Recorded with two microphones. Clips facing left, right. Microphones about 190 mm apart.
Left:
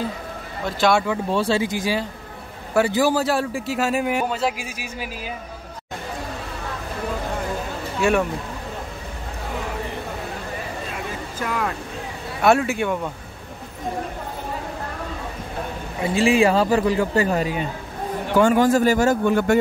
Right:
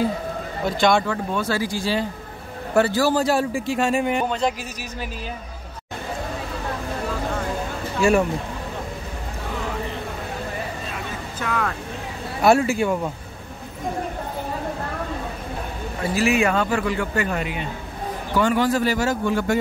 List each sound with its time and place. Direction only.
0.7 s speech: 5° left (ahead or behind)
1.3 s speech: 30° left (ahead or behind)
3.2 s a man's voice: centre (ahead or behind)
8.0 s a man's voice: centre (ahead or behind)
11.3 s a man's voice: 10° left (ahead or behind)
16.0 s speech: 25° left (ahead or behind)
18.4 s a man's voice: 45° left (ahead or behind)